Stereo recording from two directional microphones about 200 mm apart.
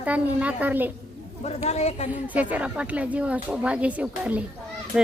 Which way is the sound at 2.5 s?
5° right (ahead or behind).